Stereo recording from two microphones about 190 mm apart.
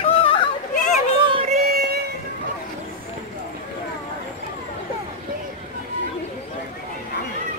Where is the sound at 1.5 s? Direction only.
55° right (ahead or behind).